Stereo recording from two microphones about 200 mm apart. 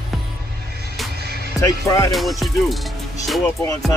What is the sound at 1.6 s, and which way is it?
Music, 15° left (ahead or behind).